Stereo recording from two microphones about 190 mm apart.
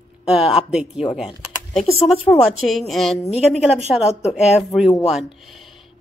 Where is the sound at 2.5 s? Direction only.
Centre (ahead or behind).